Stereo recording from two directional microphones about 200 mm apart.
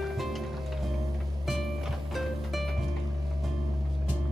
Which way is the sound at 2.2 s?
Centre (ahead or behind).